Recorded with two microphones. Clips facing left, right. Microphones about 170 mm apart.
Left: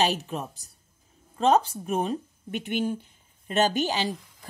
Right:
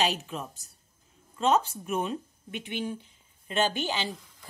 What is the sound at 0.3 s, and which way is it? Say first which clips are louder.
A woman's voice: left 4 dB; 45° left (ahead or behind).